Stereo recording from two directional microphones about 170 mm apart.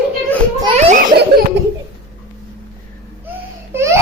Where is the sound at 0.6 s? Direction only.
35° right (ahead or behind).